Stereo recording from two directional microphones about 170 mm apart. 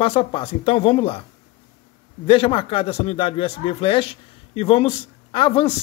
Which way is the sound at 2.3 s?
30° left (ahead or behind).